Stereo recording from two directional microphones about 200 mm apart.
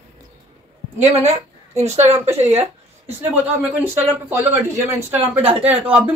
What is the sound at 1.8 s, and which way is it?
Speech, 35° right (ahead or behind).